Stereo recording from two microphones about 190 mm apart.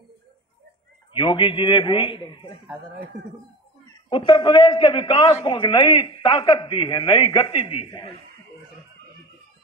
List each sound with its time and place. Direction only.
1.1 s a man's voice: 25° left (ahead or behind)
4.1 s a man's voice: 25° left (ahead or behind)